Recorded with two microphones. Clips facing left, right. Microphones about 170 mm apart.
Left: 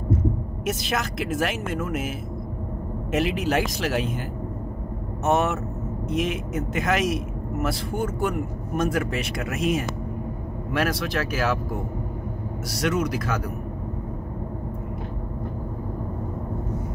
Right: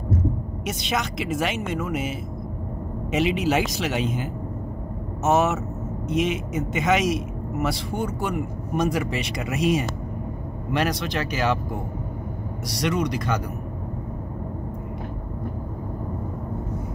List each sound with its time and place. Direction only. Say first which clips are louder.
0.7 s a man's voice: even; centre (ahead or behind)
12.6 s a man's voice: even; 5° left (ahead or behind)